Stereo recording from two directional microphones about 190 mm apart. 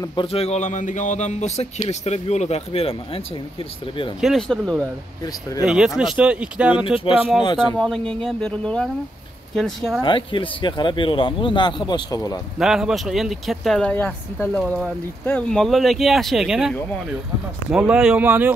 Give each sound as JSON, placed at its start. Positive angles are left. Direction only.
{"t": 0.0, "sound": "a man's voice", "side_deg": 25}
{"t": 4.2, "sound": "speech", "side_deg": 0}
{"t": 5.2, "sound": "speech", "side_deg": 20}
{"t": 5.7, "sound": "speech", "side_deg": -5}
{"t": 7.4, "sound": "speech", "side_deg": 25}
{"t": 7.7, "sound": "speech", "side_deg": 5}
{"t": 10.0, "sound": "speech", "side_deg": 25}
{"t": 12.5, "sound": "speech", "side_deg": 0}